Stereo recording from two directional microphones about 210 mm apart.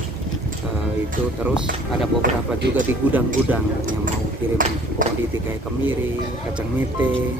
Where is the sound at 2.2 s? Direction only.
55° right (ahead or behind).